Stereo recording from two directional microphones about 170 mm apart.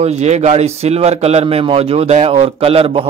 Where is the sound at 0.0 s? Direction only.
40° right (ahead or behind).